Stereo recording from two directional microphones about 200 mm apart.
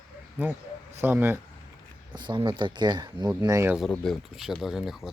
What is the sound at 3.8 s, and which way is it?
Speech, centre (ahead or behind).